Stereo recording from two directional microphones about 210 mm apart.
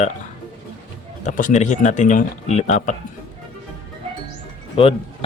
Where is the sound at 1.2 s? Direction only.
40° left (ahead or behind).